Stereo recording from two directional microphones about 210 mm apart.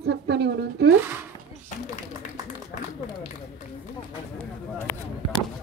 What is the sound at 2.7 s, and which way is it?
Run, 45° left (ahead or behind).